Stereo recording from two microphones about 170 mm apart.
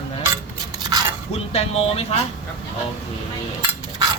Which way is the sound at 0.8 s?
25° right (ahead or behind).